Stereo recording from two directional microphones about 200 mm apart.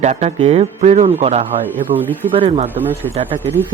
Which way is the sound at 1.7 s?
10° right (ahead or behind).